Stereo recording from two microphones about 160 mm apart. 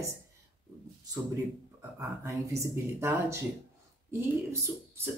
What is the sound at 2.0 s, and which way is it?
Speech, 20° right (ahead or behind).